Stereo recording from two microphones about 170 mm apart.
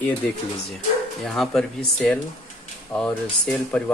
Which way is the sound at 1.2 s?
Centre (ahead or behind).